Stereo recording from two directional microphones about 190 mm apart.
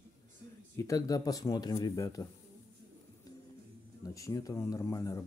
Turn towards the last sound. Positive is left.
turn(degrees=15)  # may be behind; listen again after turning